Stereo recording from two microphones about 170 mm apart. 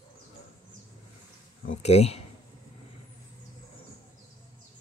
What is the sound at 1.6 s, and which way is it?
Speech, 40° left (ahead or behind).